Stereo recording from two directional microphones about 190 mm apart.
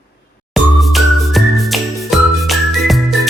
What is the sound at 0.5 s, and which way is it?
Music, centre (ahead or behind).